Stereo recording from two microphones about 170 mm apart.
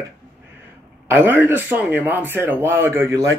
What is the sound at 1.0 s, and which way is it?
A man's voice, 10° right (ahead or behind).